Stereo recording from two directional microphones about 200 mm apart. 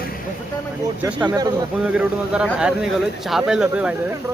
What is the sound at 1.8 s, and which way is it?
Speech, 5° right (ahead or behind).